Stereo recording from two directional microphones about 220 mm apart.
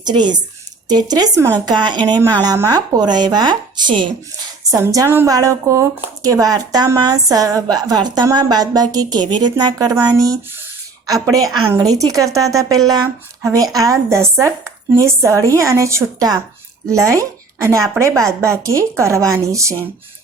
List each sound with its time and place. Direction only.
0.0 s a woman's voice: 20° right (ahead or behind)